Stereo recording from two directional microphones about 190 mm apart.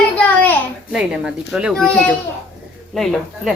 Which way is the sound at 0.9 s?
5° right (ahead or behind).